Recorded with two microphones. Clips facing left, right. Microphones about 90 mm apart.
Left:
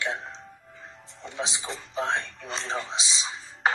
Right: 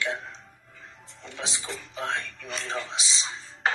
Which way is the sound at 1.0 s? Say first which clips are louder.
Left 4 dB; 20° left (ahead or behind).